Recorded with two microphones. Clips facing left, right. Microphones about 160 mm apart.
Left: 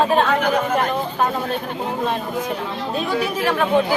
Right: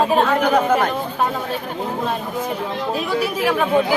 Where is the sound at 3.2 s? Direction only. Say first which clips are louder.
Right 2 dB; 10° right (ahead or behind).